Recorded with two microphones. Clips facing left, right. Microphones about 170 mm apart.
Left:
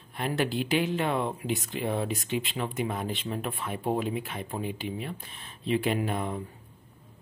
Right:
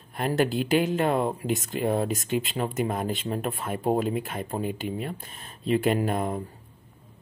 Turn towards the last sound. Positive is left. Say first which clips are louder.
# right 4 dB
turn(degrees=-45)  # may be behind; listen again after turning